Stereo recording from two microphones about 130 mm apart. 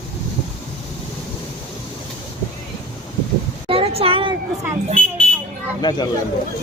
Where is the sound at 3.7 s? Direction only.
50° right (ahead or behind).